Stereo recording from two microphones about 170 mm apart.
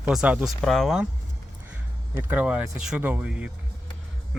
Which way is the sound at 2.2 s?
10° right (ahead or behind).